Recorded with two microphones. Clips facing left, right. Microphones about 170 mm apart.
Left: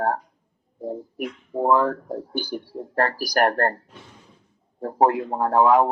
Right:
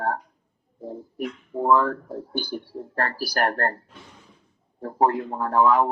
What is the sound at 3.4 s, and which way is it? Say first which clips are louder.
Speech: left 4 dB; 40° left (ahead or behind).